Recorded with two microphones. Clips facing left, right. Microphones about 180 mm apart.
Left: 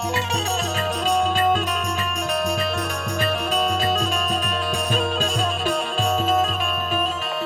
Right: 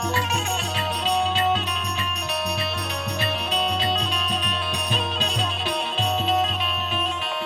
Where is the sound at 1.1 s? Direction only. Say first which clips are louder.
Left 2 dB; 45° left (ahead or behind).